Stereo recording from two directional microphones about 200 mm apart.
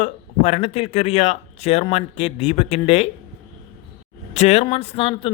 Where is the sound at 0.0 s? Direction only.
35° left (ahead or behind).